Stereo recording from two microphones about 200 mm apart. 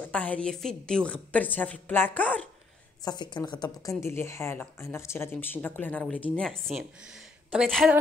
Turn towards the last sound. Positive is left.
turn(degrees=0)  # may be behind; listen again after turning